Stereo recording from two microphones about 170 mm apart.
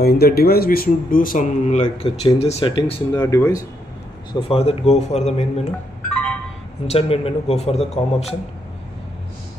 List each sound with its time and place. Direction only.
0.0 s speech: 65° left (ahead or behind); by 3.0 s 30° left (ahead or behind)
3.1 s speech: 15° left (ahead or behind)
4.3 s a man's voice: 30° left (ahead or behind)
6.0 s music: 5° left (ahead or behind)
6.9 s a man's voice: 35° left (ahead or behind)